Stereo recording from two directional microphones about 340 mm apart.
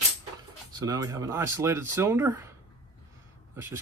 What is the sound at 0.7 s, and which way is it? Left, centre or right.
Speech, centre.